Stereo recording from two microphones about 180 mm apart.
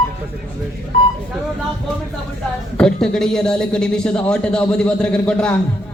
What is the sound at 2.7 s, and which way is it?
A man's voice, 5° left (ahead or behind).